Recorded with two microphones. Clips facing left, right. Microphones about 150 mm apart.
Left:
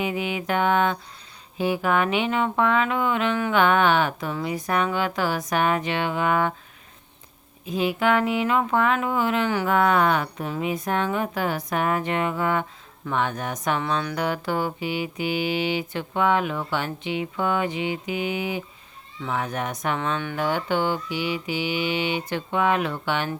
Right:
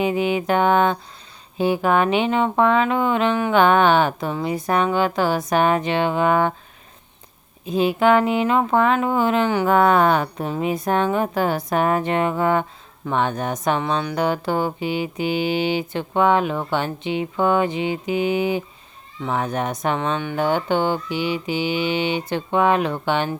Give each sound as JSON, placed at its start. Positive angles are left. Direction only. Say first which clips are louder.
{"t": 0.0, "sound": "speech", "louder": "right 6 dB", "side_deg": -30}
{"t": 7.6, "sound": "speech", "louder": "right 5 dB", "side_deg": -30}